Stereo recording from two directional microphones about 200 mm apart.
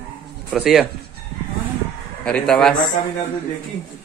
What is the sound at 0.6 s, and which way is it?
Speech, centre (ahead or behind).